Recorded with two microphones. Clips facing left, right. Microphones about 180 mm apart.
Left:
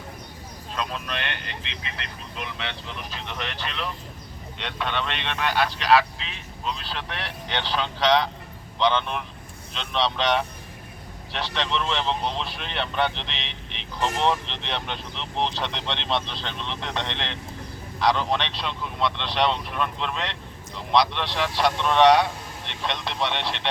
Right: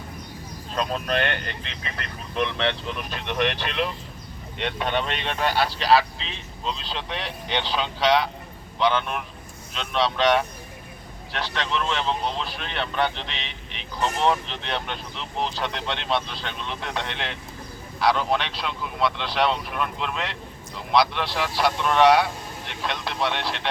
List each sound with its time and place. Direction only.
0.8 s speech: 40° right (ahead or behind); by 3.8 s 60° right (ahead or behind)
4.5 s speech: 50° right (ahead or behind); by 23.6 s 5° right (ahead or behind)